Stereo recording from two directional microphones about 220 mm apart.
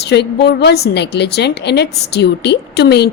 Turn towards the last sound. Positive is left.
turn(degrees=50)  # may be behind; listen again after turning